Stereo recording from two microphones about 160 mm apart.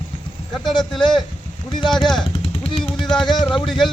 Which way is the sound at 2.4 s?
35° left (ahead or behind).